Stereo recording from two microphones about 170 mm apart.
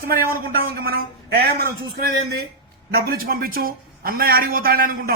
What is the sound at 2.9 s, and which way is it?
Speech, 65° right (ahead or behind).